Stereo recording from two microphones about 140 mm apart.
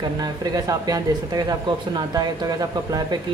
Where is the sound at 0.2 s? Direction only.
25° right (ahead or behind).